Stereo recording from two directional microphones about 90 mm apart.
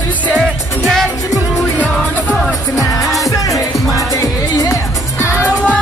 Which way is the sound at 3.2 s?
40° left (ahead or behind).